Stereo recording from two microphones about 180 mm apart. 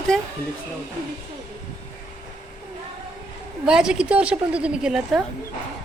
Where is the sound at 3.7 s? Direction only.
5° right (ahead or behind).